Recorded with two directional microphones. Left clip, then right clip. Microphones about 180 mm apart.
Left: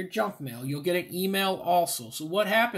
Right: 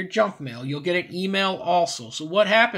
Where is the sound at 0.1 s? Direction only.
25° right (ahead or behind).